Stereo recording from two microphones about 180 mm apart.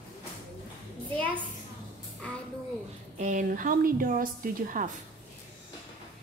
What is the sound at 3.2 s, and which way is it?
A woman's voice, 45° right (ahead or behind).